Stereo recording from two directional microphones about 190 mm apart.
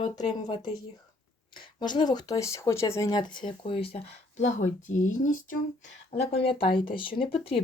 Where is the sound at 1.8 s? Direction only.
25° left (ahead or behind).